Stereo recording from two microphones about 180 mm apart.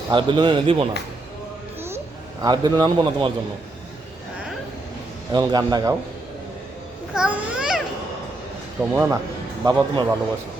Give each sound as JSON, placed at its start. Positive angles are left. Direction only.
{"t": 0.1, "sound": "a man's voice", "side_deg": -25}
{"t": 2.4, "sound": "a man's voice", "side_deg": -20}
{"t": 5.3, "sound": "a man's voice", "side_deg": -20}
{"t": 7.2, "sound": "a child's voice", "side_deg": -5}
{"t": 8.8, "sound": "speech", "side_deg": -15}
{"t": 9.6, "sound": "a man's voice", "side_deg": -25}